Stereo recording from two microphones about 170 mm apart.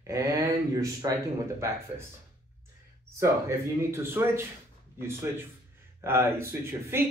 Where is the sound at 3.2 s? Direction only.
15° right (ahead or behind).